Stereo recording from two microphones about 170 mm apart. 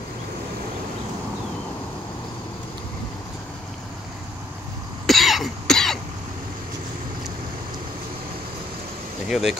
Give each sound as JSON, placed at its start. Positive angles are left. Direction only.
{"t": 5.0, "sound": "cough", "side_deg": 0}
{"t": 9.3, "sound": "speech", "side_deg": 0}